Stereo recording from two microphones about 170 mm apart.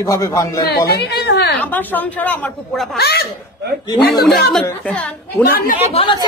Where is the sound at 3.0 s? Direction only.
70° left (ahead or behind).